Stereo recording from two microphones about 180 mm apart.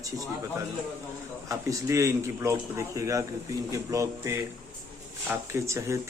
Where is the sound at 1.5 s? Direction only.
20° right (ahead or behind).